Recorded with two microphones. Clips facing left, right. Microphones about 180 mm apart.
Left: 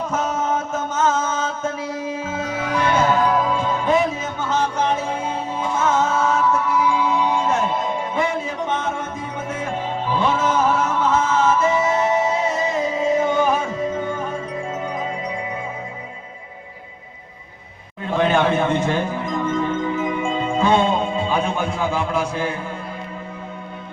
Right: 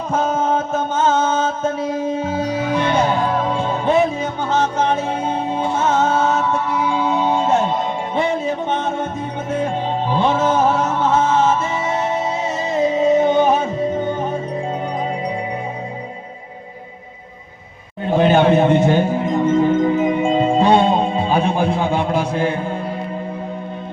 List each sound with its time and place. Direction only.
0.1 s music: 30° right (ahead or behind)
18.0 s music: 35° right (ahead or behind)